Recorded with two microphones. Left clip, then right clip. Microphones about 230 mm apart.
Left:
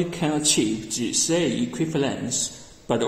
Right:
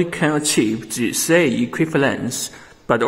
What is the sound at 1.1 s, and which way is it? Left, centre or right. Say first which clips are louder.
Speech: right 7 dB; right.